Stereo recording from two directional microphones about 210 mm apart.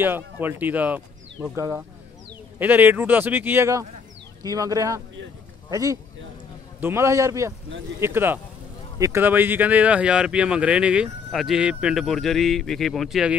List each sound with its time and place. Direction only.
0.0 s speech: 10° right (ahead or behind)